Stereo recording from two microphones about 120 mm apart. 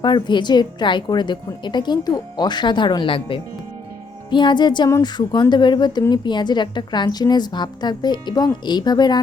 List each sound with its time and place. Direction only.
0.0 s a woman's voice: 40° left (ahead or behind)